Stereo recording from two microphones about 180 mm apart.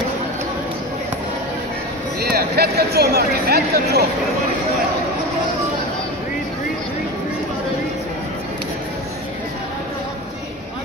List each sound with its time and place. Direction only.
2.1 s speech: 60° right (ahead or behind)